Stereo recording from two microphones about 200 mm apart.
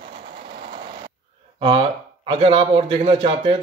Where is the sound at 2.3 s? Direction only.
30° right (ahead or behind).